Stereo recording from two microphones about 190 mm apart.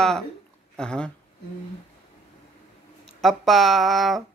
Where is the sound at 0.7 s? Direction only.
5° left (ahead or behind).